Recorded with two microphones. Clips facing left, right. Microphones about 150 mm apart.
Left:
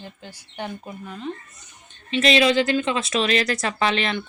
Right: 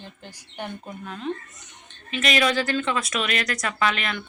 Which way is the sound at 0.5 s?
5° left (ahead or behind).